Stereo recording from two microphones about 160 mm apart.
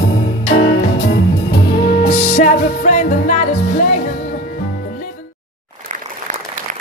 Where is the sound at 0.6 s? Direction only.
65° left (ahead or behind).